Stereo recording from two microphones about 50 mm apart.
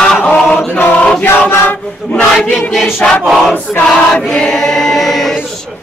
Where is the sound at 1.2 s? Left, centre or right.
Left.